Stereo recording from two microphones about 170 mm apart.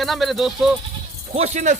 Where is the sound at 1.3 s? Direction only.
40° right (ahead or behind).